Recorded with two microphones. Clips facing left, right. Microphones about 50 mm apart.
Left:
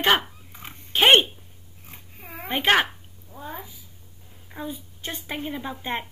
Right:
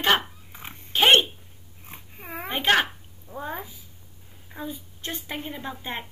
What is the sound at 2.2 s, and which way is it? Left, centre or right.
Speech, right.